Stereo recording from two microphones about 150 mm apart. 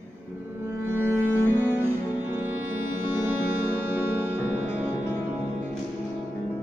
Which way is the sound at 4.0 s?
15° right (ahead or behind).